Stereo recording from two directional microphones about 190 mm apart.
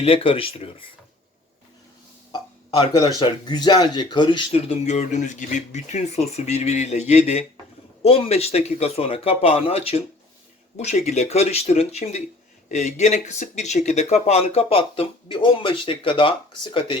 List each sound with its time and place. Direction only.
0.0 s speech: 30° left (ahead or behind)
2.3 s a sound: 20° left (ahead or behind)
3.2 s speech: 20° left (ahead or behind)